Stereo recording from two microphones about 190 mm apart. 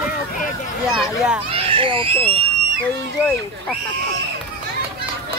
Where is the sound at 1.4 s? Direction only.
30° right (ahead or behind).